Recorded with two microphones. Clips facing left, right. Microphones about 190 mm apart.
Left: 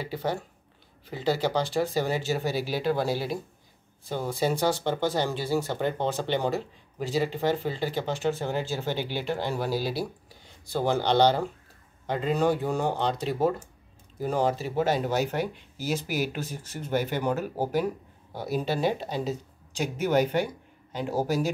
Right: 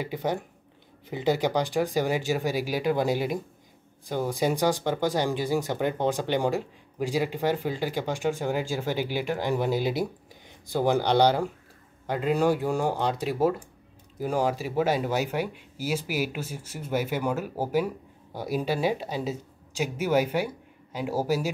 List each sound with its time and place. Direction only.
0.0 s speech: 15° right (ahead or behind)